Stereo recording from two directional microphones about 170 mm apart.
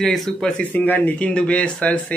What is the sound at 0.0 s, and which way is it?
Speech, centre (ahead or behind).